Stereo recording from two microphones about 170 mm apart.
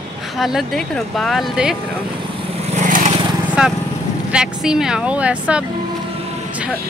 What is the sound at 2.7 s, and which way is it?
Vehicle, 50° right (ahead or behind).